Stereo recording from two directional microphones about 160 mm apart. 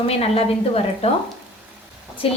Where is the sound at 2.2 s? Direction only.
35° left (ahead or behind).